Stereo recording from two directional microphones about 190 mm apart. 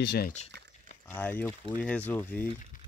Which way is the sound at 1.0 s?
10° left (ahead or behind).